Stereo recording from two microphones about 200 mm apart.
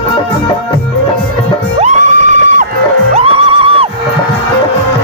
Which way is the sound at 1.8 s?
35° right (ahead or behind).